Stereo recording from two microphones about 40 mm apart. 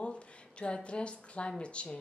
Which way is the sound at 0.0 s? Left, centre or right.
Left.